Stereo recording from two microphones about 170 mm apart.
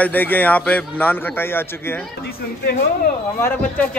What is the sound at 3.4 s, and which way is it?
Speech, 10° left (ahead or behind).